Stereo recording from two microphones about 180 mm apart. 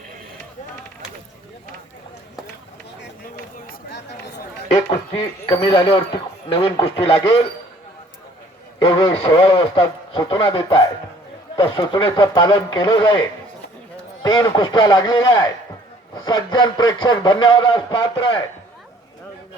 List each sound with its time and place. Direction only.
3.0 s run: 60° left (ahead or behind)
4.9 s a man's voice: 30° left (ahead or behind)
8.8 s a man's voice: 30° left (ahead or behind)